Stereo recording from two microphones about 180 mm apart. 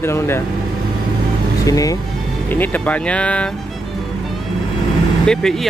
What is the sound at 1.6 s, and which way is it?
Speech, 20° left (ahead or behind).